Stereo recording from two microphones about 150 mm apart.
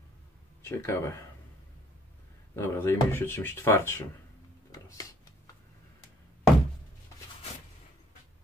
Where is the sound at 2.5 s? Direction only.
15° left (ahead or behind).